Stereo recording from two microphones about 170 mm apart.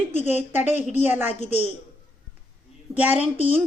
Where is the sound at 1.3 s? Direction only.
40° left (ahead or behind).